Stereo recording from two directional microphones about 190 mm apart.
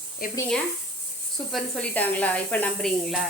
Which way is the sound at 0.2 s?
50° left (ahead or behind).